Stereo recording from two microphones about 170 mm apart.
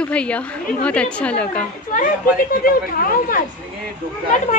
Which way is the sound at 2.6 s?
55° left (ahead or behind).